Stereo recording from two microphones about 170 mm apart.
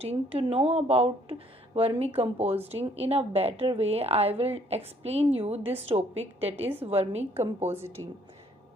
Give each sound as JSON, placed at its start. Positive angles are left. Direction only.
{"t": 0.0, "sound": "speech", "side_deg": -35}
{"t": 7.8, "sound": "a woman's voice", "side_deg": -15}